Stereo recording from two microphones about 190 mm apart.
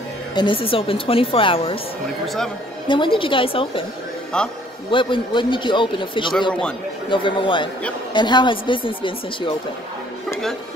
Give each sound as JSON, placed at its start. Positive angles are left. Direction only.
{"t": 0.3, "sound": "speech", "side_deg": 25}
{"t": 2.2, "sound": "speech", "side_deg": 0}
{"t": 2.9, "sound": "speech", "side_deg": 25}
{"t": 4.3, "sound": "speech", "side_deg": 5}
{"t": 4.9, "sound": "speech", "side_deg": 25}